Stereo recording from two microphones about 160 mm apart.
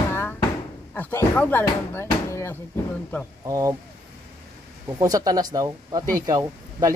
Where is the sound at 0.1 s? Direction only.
15° left (ahead or behind).